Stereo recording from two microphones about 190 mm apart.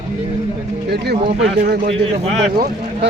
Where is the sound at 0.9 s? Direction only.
60° right (ahead or behind).